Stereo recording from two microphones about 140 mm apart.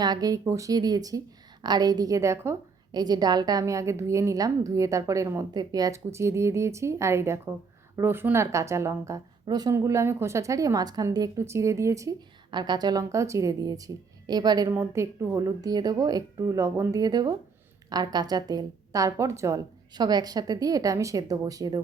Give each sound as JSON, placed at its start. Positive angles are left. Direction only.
{"t": 0.0, "sound": "a woman's voice", "side_deg": -30}
{"t": 14.7, "sound": "a woman's voice", "side_deg": -15}